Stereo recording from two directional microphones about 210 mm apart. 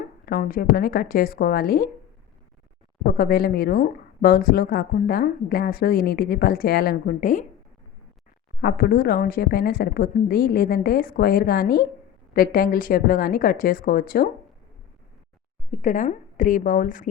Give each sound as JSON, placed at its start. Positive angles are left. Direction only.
{"t": 0.3, "sound": "speech", "side_deg": 45}
{"t": 3.1, "sound": "speech", "side_deg": 45}
{"t": 8.6, "sound": "speech", "side_deg": 45}
{"t": 15.8, "sound": "a woman's voice", "side_deg": 35}